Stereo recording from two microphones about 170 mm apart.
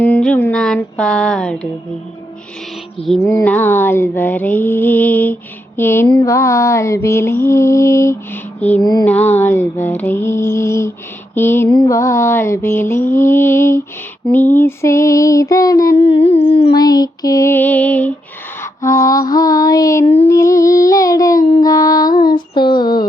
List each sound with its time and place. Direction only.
0.0 s a sound: 5° left (ahead or behind)
3.2 s mantra: 15° left (ahead or behind)
8.8 s lullaby: 25° left (ahead or behind)
9.0 s mantra: 10° left (ahead or behind)
14.6 s lullaby: 15° left (ahead or behind)
16.0 s music: 35° left (ahead or behind)
16.7 s mantra: 20° left (ahead or behind)
18.6 s lullaby: 20° left (ahead or behind)
21.6 s female singing: 20° left (ahead or behind)
22.8 s a sound: 25° left (ahead or behind)